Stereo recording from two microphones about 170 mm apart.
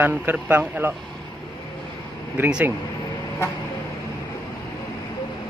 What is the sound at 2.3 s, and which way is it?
Speech, 10° right (ahead or behind).